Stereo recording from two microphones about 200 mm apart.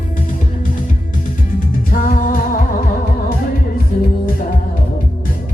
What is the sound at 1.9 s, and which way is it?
Music, 45° left (ahead or behind).